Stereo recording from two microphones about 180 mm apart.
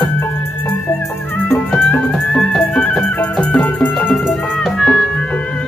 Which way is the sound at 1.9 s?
5° left (ahead or behind).